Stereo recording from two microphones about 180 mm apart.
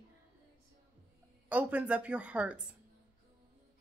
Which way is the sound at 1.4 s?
10° right (ahead or behind).